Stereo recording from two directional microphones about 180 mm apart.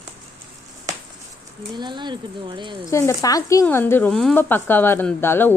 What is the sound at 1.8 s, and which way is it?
Speech, 25° right (ahead or behind).